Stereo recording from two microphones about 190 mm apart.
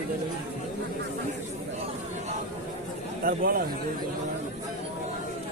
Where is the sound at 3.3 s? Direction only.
50° right (ahead or behind).